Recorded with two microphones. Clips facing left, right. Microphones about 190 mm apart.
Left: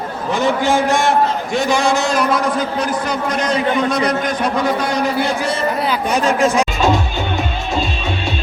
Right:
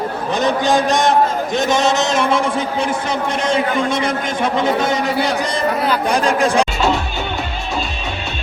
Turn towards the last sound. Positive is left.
turn(degrees=-35)  # may be behind; listen again after turning